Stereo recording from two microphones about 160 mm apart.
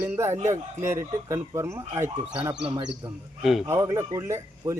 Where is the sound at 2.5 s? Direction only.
35° right (ahead or behind).